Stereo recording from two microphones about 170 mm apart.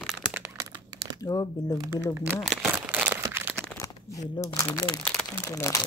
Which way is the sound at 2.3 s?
5° right (ahead or behind).